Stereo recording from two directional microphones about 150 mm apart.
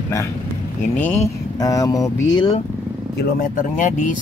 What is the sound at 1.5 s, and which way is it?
Speech, 25° left (ahead or behind).